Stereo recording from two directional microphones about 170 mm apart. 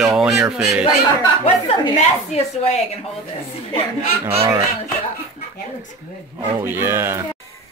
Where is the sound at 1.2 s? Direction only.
25° left (ahead or behind).